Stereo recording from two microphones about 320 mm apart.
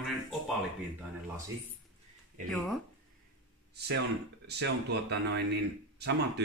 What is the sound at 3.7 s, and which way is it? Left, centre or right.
Speech, right.